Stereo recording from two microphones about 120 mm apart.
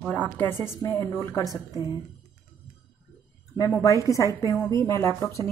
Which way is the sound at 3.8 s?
25° left (ahead or behind).